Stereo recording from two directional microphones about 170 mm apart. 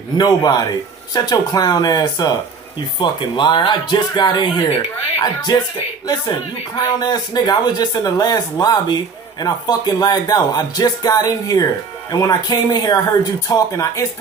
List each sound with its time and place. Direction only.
0.2 s speech: 25° left (ahead or behind)
7.0 s speech: 25° left (ahead or behind)